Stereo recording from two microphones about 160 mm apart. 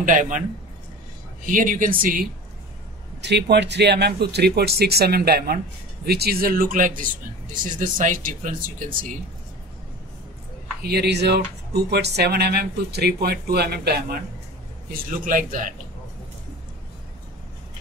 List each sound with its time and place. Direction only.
0.0 s speech: 55° right (ahead or behind)
1.4 s speech: 55° right (ahead or behind)
3.2 s speech: 90° right; by 8.9 s 60° right (ahead or behind)
10.8 s speech: 90° right
14.9 s speech: 55° right (ahead or behind)